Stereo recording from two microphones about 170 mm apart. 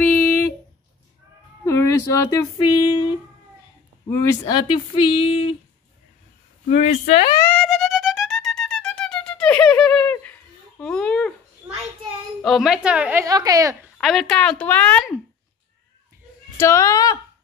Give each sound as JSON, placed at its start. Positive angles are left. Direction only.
{"t": 0.0, "sound": "a sound", "side_deg": 10}
{"t": 1.6, "sound": "speech", "side_deg": 15}
{"t": 2.6, "sound": "a sound", "side_deg": 30}
{"t": 4.1, "sound": "speech", "side_deg": 15}
{"t": 6.7, "sound": "speech", "side_deg": 45}
{"t": 7.4, "sound": "music", "side_deg": 5}
{"t": 10.8, "sound": "a sound", "side_deg": 5}
{"t": 12.4, "sound": "speech", "side_deg": 0}
{"t": 13.2, "sound": "a child's voice", "side_deg": -20}
{"t": 13.9, "sound": "speech", "side_deg": 0}
{"t": 16.5, "sound": "a woman's voice", "side_deg": 15}